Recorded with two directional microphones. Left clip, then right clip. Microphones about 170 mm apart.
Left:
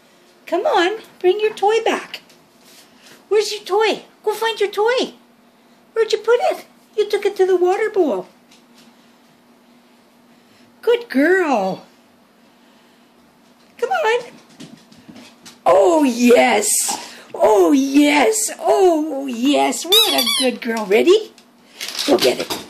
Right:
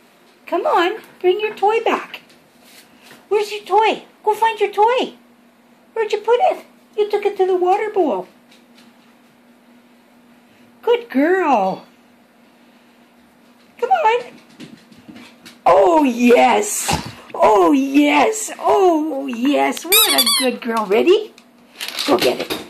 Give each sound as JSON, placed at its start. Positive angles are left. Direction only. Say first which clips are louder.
{"t": 0.5, "sound": "speech", "louder": "even", "side_deg": 15}
{"t": 3.3, "sound": "a child's voice", "louder": "left 1 dB", "side_deg": 30}
{"t": 10.8, "sound": "speech", "louder": "even", "side_deg": 20}
{"t": 13.7, "sound": "a sound", "louder": "right 2 dB", "side_deg": 20}
{"t": 15.6, "sound": "a child's voice", "louder": "right 1 dB", "side_deg": 15}